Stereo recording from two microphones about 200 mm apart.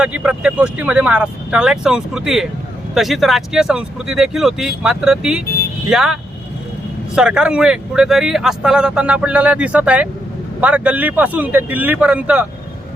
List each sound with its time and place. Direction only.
0.0 s speech: 5° right (ahead or behind)
7.2 s a man's voice: 5° right (ahead or behind)